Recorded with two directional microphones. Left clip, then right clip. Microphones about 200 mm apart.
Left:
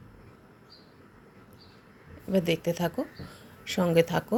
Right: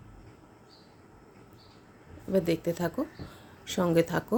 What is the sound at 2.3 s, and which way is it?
Speech, 10° right (ahead or behind).